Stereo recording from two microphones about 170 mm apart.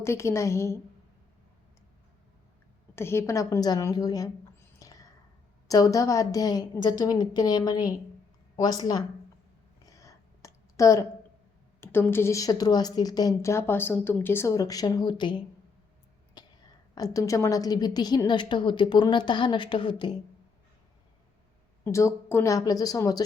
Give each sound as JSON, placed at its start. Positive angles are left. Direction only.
{"t": 0.0, "sound": "a woman's voice", "side_deg": 15}
{"t": 2.9, "sound": "a woman's voice", "side_deg": 15}
{"t": 4.8, "sound": "whispering", "side_deg": 20}
{"t": 5.6, "sound": "a woman's voice", "side_deg": 20}
{"t": 9.8, "sound": "a sound", "side_deg": 20}
{"t": 11.8, "sound": "a woman's voice", "side_deg": 15}
{"t": 16.4, "sound": "a sound", "side_deg": 25}
{"t": 16.9, "sound": "a woman's voice", "side_deg": 20}
{"t": 21.8, "sound": "a woman's voice", "side_deg": 15}